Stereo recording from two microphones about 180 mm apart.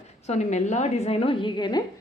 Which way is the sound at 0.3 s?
40° left (ahead or behind).